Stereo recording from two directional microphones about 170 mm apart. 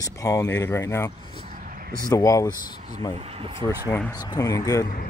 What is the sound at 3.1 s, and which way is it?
Speech, 35° right (ahead or behind).